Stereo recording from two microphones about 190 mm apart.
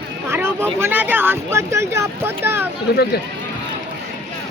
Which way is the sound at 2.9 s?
55° left (ahead or behind).